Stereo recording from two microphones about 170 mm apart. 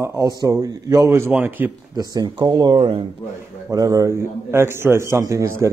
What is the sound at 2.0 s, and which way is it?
A man's voice, 25° right (ahead or behind).